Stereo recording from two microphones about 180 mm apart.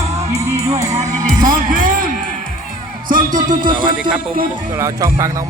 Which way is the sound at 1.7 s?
50° right (ahead or behind).